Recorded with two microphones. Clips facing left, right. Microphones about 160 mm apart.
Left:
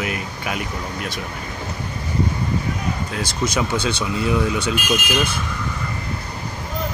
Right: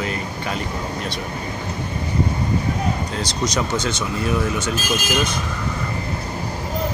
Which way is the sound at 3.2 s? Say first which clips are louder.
Even; 55° left (ahead or behind).